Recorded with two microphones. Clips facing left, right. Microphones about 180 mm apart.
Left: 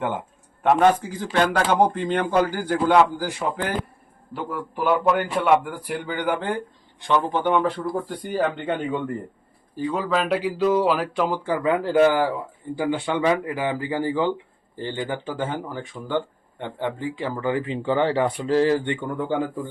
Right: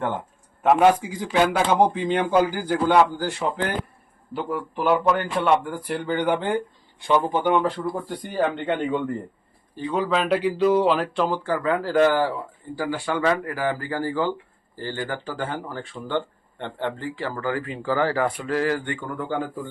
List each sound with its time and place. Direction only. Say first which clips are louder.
0.6 s a man's voice: right 1 dB; 5° right (ahead or behind); by 19.4 s 20° left (ahead or behind)